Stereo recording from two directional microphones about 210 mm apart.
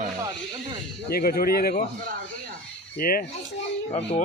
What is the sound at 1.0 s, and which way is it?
Speech, 45° left (ahead or behind).